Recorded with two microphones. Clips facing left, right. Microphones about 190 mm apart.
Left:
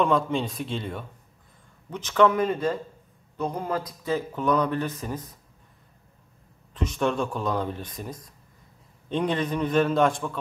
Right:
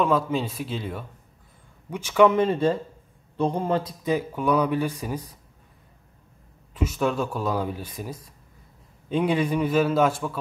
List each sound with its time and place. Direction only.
0.0 s a man's voice: 5° right (ahead or behind)
2.3 s a man's voice: 30° right (ahead or behind)
4.1 s speech: 10° right (ahead or behind)
6.7 s a man's voice: 5° right (ahead or behind)